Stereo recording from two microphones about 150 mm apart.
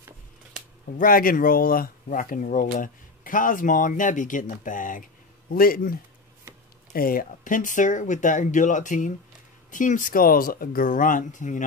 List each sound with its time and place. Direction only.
0.9 s speech: 70° left (ahead or behind)
5.5 s speech: 75° left (ahead or behind); by 11.6 s 55° left (ahead or behind)